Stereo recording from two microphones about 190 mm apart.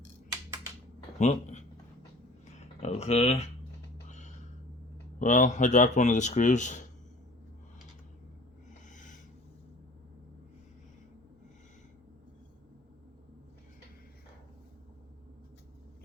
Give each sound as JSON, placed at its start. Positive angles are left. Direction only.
{"t": 1.2, "sound": "speech", "side_deg": 40}
{"t": 2.8, "sound": "speech", "side_deg": 35}
{"t": 5.2, "sound": "speech", "side_deg": 40}
{"t": 8.9, "sound": "snort", "side_deg": 40}